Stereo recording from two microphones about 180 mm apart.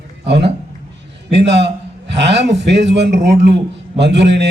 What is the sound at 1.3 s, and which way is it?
A man's voice, 70° right (ahead or behind).